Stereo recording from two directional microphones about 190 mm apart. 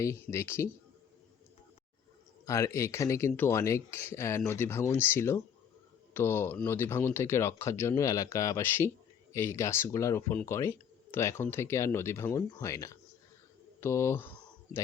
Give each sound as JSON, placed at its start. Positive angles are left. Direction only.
{"t": 0.0, "sound": "speech", "side_deg": 15}
{"t": 2.5, "sound": "speech", "side_deg": 15}
{"t": 13.8, "sound": "a sound", "side_deg": 15}